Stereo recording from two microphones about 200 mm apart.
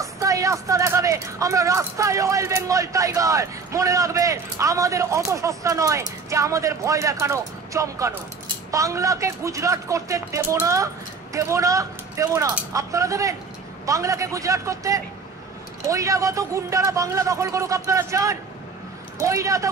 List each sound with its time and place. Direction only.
0.0 s speech: 15° right (ahead or behind)